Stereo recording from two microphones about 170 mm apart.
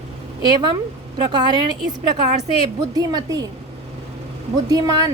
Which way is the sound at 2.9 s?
25° right (ahead or behind).